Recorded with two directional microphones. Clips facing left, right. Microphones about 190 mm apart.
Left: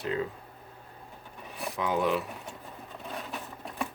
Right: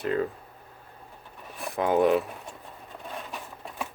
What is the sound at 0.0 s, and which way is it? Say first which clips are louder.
Speech: right 4 dB; 50° right (ahead or behind).